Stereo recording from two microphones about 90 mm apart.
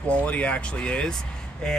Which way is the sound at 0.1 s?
15° left (ahead or behind).